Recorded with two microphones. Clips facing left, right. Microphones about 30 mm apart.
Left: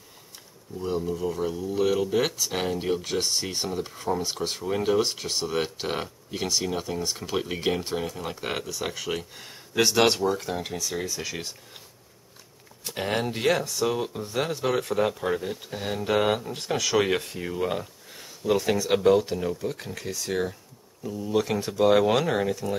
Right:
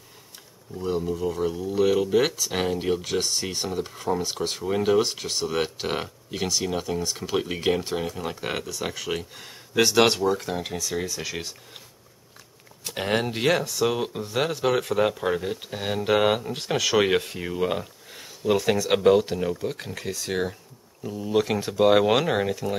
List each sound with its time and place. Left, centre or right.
0.7 s speech: centre
3.2 s speech: centre
5.1 s speech: centre
12.8 s speech: centre
19.5 s speech: right
19.8 s speech: centre